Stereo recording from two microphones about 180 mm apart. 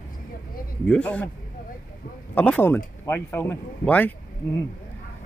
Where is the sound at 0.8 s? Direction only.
5° left (ahead or behind).